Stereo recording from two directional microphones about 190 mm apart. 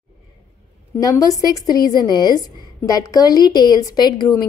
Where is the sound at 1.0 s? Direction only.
20° left (ahead or behind).